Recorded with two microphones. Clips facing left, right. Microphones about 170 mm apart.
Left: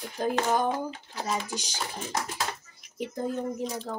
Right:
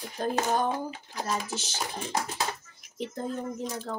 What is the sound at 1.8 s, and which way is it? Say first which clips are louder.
Speech: right 2 dB; 15° right (ahead or behind).